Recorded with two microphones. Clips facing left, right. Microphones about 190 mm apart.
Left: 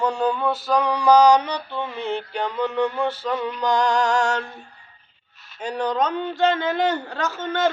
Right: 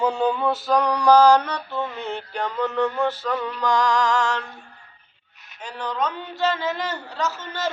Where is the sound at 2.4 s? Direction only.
10° left (ahead or behind).